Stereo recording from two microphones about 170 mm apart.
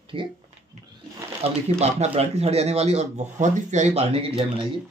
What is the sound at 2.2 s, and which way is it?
Speech, 40° right (ahead or behind).